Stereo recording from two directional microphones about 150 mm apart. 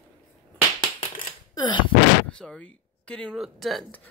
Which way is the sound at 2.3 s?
5° left (ahead or behind).